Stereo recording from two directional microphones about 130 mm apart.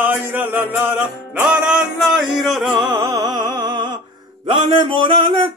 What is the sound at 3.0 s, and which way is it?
Music, 25° right (ahead or behind).